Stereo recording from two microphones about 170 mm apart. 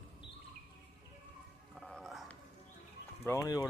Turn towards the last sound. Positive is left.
turn(degrees=20)  # may be behind; listen again after turning